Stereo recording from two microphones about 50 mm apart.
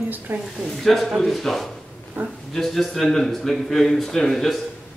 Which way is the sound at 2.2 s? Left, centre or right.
Right.